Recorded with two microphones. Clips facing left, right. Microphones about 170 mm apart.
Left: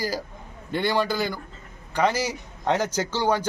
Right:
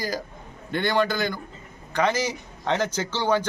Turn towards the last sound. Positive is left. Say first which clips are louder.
# even
turn(degrees=10)  # may be behind; listen again after turning